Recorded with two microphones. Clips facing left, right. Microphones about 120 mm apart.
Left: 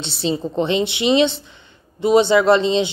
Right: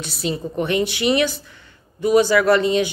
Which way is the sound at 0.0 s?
25° left (ahead or behind).